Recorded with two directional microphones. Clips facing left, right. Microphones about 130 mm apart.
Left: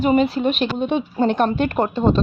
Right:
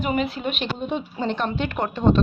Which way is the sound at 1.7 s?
35° left (ahead or behind).